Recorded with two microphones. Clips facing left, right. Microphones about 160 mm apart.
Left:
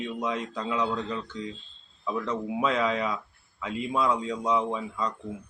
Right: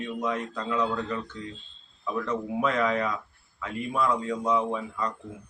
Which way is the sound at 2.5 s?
15° left (ahead or behind).